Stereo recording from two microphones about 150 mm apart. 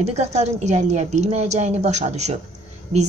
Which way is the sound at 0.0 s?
45° right (ahead or behind).